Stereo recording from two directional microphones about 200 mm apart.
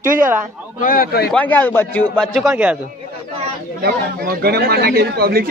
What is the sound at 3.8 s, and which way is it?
Speech, 50° right (ahead or behind).